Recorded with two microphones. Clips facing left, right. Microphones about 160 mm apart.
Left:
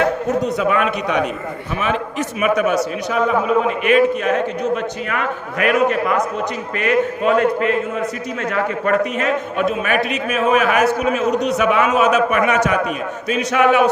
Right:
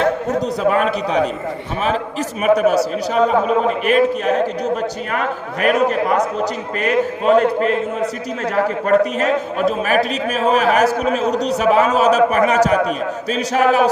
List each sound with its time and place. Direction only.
0.4 s a man's voice: 35° right (ahead or behind)